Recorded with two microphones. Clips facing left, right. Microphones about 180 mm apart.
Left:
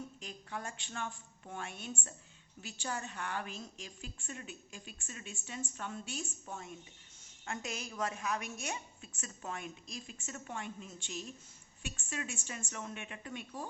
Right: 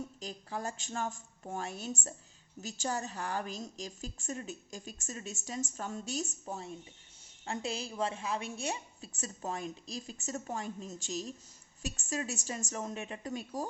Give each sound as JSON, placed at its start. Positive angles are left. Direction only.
{"t": 0.2, "sound": "a woman's voice", "side_deg": -35}